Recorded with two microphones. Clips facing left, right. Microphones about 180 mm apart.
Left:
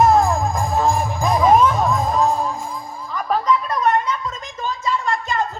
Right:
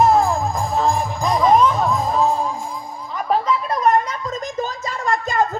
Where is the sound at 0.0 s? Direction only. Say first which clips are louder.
Even; centre (ahead or behind).